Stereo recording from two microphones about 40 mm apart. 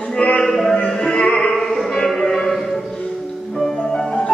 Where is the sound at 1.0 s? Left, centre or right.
Left.